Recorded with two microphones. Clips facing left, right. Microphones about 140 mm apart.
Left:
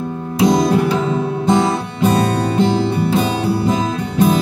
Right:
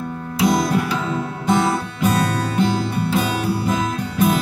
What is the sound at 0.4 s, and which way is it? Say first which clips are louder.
Music: left 5 dB; 20° left (ahead or behind).